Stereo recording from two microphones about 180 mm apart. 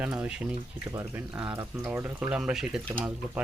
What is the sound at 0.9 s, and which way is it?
Speech, 20° right (ahead or behind).